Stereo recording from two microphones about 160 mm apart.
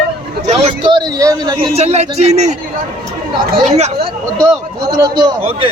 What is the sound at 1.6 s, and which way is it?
Speech, 40° right (ahead or behind).